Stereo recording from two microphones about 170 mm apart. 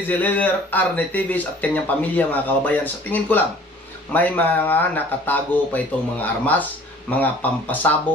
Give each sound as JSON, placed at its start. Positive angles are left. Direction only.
{"t": 0.1, "sound": "speech", "side_deg": 10}